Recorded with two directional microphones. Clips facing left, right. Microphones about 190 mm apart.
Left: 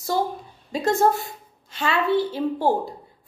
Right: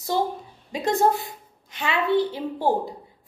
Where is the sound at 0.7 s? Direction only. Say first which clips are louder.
Left 1 dB; 15° right (ahead or behind).